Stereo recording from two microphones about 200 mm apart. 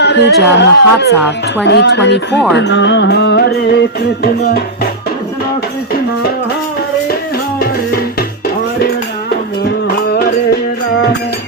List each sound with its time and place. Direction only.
0.0 s a sound: 60° left (ahead or behind)
0.5 s music: 60° left (ahead or behind)
9.8 s music: 50° left (ahead or behind)